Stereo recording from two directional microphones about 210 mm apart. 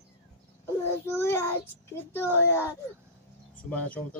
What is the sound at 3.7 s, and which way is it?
Speech, 5° left (ahead or behind).